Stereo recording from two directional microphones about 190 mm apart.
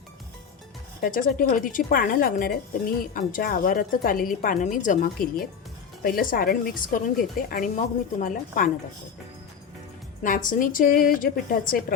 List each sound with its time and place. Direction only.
1.0 s a woman's voice: 50° left (ahead or behind)
10.2 s a woman's voice: 45° left (ahead or behind)